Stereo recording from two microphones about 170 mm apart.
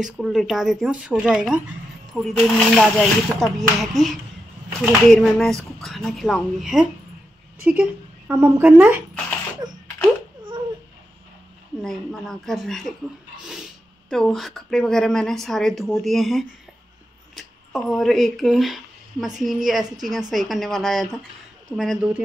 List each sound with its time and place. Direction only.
0.0 s a woman's voice: centre (ahead or behind)
9.6 s a sound: 25° right (ahead or behind)
11.8 s speech: centre (ahead or behind)
14.1 s speech: centre (ahead or behind)